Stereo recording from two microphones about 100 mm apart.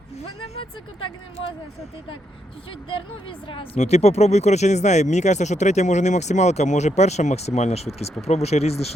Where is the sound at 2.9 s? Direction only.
60° left (ahead or behind); by 4.5 s 90° left.